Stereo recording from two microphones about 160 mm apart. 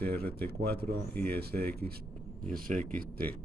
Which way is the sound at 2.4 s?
55° right (ahead or behind).